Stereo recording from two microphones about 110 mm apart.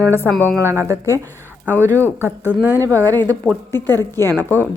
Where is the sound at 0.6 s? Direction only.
25° right (ahead or behind).